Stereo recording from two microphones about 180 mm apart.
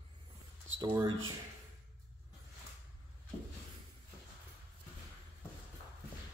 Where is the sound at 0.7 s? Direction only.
25° right (ahead or behind).